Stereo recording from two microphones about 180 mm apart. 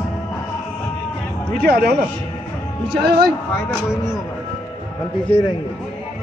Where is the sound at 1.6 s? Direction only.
60° right (ahead or behind).